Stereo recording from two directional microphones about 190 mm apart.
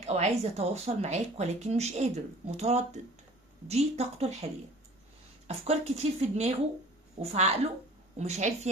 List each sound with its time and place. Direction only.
0.0 s speech: 35° right (ahead or behind)
5.5 s speech: 35° right (ahead or behind)